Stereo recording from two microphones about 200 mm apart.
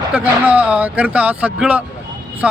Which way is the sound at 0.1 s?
10° right (ahead or behind).